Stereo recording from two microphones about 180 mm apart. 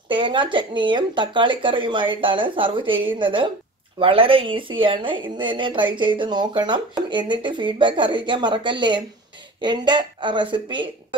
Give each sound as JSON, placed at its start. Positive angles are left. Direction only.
{"t": 0.1, "sound": "speech", "side_deg": -25}